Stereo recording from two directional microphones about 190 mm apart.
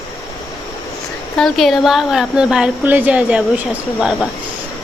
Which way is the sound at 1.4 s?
Centre (ahead or behind).